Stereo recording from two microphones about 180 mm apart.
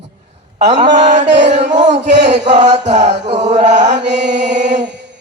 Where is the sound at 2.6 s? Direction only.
40° right (ahead or behind).